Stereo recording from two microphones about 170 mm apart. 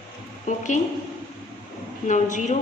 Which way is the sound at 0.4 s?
45° left (ahead or behind).